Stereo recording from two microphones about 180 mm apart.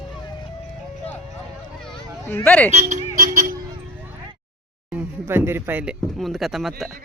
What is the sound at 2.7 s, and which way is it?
Speech, 40° right (ahead or behind).